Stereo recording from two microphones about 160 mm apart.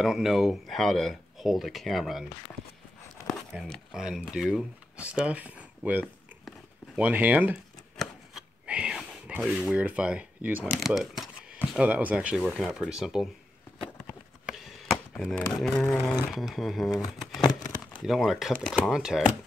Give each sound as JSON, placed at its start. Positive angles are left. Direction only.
{"t": 0.0, "sound": "speech", "side_deg": 0}
{"t": 3.3, "sound": "speech", "side_deg": 0}
{"t": 8.0, "sound": "chopping", "side_deg": -5}
{"t": 10.8, "sound": "speech", "side_deg": 0}
{"t": 12.4, "sound": "speech", "side_deg": 5}
{"t": 14.5, "sound": "chop", "side_deg": 0}
{"t": 15.6, "sound": "speech", "side_deg": 5}
{"t": 18.0, "sound": "speech", "side_deg": 0}